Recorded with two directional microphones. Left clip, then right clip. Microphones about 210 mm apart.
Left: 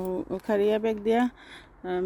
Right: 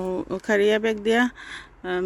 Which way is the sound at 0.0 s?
5° right (ahead or behind).